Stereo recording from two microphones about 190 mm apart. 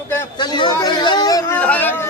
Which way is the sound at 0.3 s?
25° left (ahead or behind).